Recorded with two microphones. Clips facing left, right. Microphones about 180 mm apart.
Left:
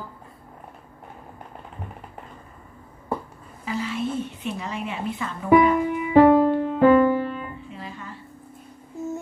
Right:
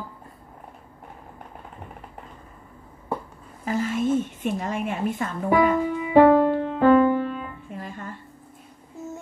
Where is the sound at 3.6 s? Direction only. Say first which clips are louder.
Right 4 dB; 50° right (ahead or behind).